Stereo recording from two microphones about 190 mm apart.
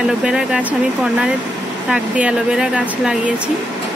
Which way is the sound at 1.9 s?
5° right (ahead or behind).